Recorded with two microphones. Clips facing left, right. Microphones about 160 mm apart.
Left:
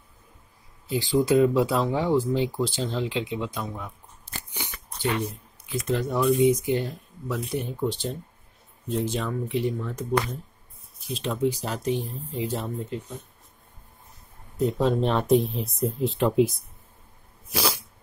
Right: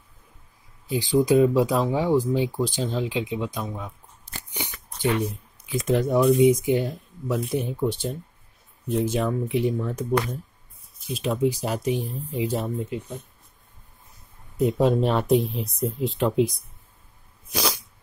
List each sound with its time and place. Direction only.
0.8 s speech: 15° right (ahead or behind)
4.6 s shuffling cards: 15° right (ahead or behind)
5.7 s speech: 15° right (ahead or behind)
11.1 s speech: 10° right (ahead or behind)
14.6 s speech: 10° right (ahead or behind)
17.5 s sneeze: centre (ahead or behind)